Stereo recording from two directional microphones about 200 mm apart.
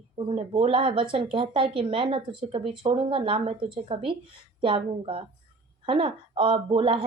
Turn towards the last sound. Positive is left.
turn(degrees=-30)  # may be behind; listen again after turning